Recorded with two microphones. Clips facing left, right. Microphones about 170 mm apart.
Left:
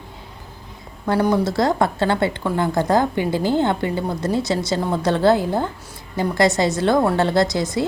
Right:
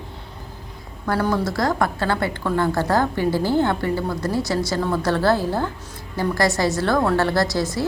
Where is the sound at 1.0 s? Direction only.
20° left (ahead or behind).